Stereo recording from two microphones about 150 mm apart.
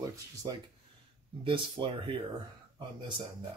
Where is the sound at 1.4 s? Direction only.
35° right (ahead or behind).